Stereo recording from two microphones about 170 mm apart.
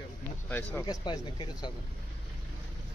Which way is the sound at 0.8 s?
25° left (ahead or behind).